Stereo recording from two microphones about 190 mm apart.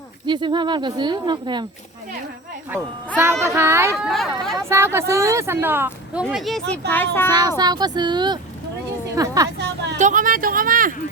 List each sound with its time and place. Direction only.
0.3 s speech: 25° right (ahead or behind)
3.2 s speech: 15° right (ahead or behind)
6.2 s speech: centre (ahead or behind)
7.3 s a woman's voice: 20° right (ahead or behind)
9.6 s a sound: 60° right (ahead or behind)
10.0 s speech: 45° right (ahead or behind)